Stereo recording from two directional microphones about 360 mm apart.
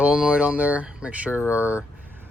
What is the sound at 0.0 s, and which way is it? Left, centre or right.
Speech, centre.